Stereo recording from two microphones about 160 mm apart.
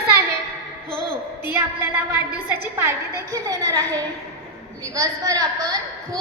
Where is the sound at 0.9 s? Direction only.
30° left (ahead or behind).